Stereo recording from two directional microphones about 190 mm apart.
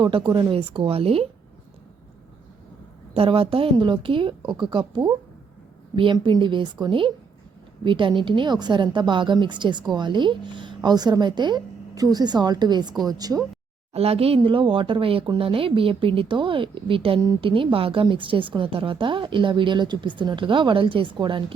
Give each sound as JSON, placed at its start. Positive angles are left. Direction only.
{"t": 0.0, "sound": "speech", "side_deg": -25}
{"t": 3.2, "sound": "speech", "side_deg": -30}
{"t": 13.9, "sound": "speech", "side_deg": -30}